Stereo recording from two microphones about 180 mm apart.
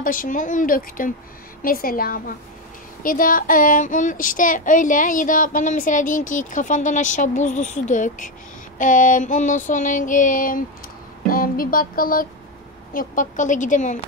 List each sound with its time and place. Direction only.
0.0 s child singing: 50° left (ahead or behind)
11.2 s music: 55° left (ahead or behind)
12.9 s child singing: 45° left (ahead or behind)